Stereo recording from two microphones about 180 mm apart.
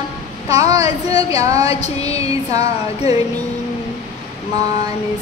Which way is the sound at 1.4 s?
20° right (ahead or behind).